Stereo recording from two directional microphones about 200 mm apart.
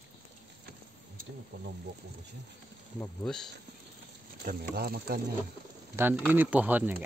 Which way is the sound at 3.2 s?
5° left (ahead or behind).